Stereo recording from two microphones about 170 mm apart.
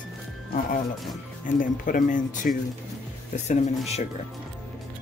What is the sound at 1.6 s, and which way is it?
Speech, 50° left (ahead or behind).